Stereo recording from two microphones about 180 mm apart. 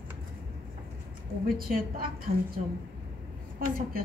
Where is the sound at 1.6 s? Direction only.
50° right (ahead or behind).